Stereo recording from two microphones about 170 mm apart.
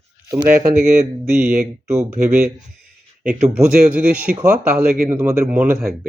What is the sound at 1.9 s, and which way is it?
Speech, 15° right (ahead or behind).